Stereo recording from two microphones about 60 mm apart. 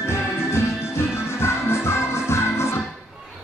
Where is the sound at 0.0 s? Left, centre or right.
Left.